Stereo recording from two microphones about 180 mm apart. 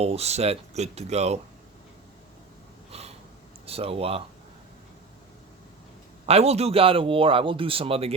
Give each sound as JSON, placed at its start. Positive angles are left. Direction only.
{"t": 0.0, "sound": "speech", "side_deg": -35}
{"t": 3.7, "sound": "speech", "side_deg": -30}
{"t": 6.2, "sound": "speech", "side_deg": -35}